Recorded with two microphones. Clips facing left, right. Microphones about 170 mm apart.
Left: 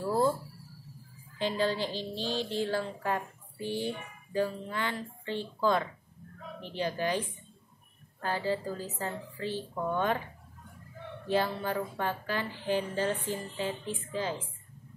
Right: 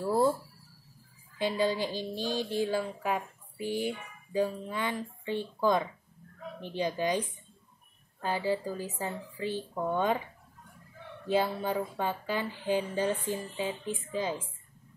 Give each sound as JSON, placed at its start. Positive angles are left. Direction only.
{"t": 0.0, "sound": "a sound", "side_deg": -10}
{"t": 1.4, "sound": "speech", "side_deg": -15}
{"t": 11.2, "sound": "speech", "side_deg": -15}